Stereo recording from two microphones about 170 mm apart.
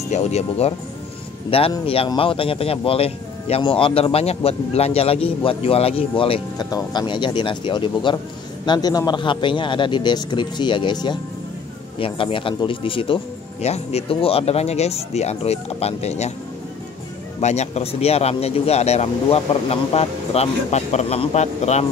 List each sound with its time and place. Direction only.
0.1 s a man's voice: 40° left (ahead or behind)
17.4 s speech: 40° left (ahead or behind)